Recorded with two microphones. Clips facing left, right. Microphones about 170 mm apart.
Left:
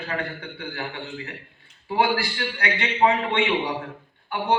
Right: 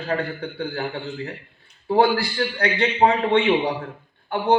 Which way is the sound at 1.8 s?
40° right (ahead or behind).